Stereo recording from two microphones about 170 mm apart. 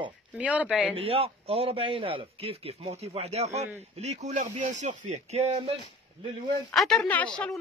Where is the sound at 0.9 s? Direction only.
35° right (ahead or behind).